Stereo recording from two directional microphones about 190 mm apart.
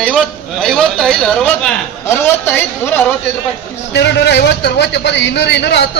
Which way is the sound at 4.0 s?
65° left (ahead or behind).